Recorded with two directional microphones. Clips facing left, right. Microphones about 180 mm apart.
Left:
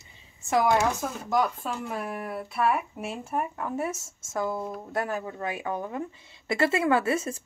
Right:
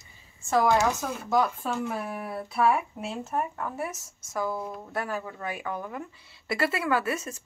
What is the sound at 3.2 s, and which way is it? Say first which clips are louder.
Speech: even; 15° left (ahead or behind).